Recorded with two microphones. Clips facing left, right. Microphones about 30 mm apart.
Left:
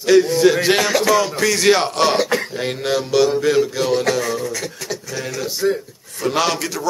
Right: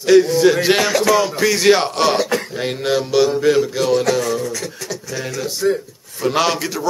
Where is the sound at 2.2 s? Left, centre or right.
Centre.